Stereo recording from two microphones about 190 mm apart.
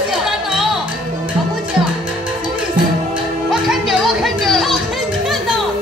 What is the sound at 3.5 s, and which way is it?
Music, centre (ahead or behind).